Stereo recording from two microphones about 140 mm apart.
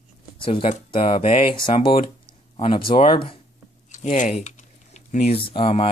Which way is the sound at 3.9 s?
60° left (ahead or behind).